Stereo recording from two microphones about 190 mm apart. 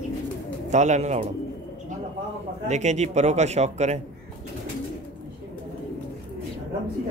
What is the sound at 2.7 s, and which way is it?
Speech, 35° right (ahead or behind).